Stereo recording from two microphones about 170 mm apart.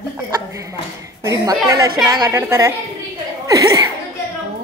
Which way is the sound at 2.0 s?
20° right (ahead or behind).